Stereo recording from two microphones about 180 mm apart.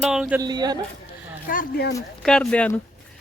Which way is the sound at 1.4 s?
50° left (ahead or behind).